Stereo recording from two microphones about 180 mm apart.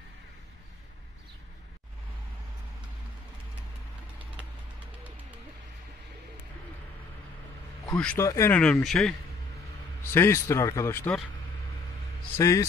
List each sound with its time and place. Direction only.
8.0 s speech: 5° left (ahead or behind)
10.1 s speech: 15° left (ahead or behind)
12.4 s speech: 15° left (ahead or behind)